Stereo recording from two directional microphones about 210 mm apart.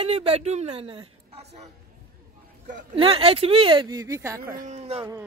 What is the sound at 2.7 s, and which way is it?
Speech, 25° right (ahead or behind).